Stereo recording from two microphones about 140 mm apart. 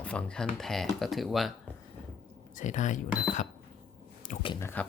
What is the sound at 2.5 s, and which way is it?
Speech, 60° left (ahead or behind).